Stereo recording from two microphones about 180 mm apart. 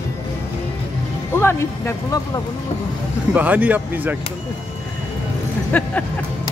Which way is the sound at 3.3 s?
10° right (ahead or behind).